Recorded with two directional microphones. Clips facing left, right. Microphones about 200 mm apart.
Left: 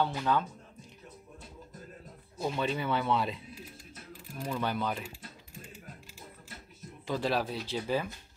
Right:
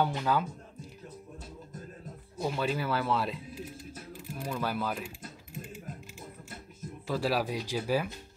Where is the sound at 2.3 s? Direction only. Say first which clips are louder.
Right 1 dB; 5° right (ahead or behind).